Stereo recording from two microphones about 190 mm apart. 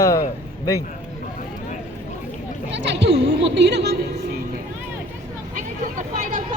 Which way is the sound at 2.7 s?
65° right (ahead or behind).